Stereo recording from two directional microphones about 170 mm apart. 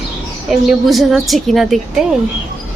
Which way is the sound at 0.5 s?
Centre (ahead or behind).